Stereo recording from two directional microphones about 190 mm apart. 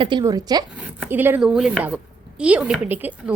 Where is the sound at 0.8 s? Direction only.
10° right (ahead or behind).